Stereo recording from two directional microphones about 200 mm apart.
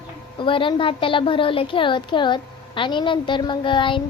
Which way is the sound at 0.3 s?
25° left (ahead or behind).